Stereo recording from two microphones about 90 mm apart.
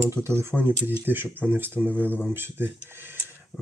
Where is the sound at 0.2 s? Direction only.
30° right (ahead or behind).